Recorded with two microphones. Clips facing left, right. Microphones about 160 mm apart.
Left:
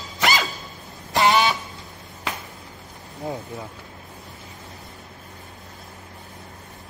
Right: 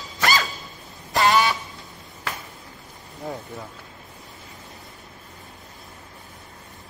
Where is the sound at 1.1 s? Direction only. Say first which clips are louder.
Left 1 dB; 20° left (ahead or behind).